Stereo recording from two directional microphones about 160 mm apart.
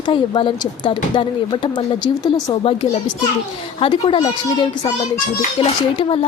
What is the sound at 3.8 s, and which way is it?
A child's voice, 30° left (ahead or behind).